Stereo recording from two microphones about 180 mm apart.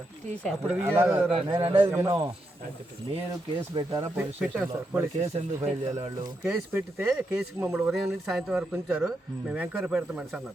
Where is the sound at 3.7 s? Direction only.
25° right (ahead or behind).